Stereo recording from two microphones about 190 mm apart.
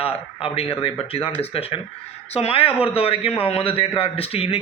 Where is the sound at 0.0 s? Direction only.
30° left (ahead or behind).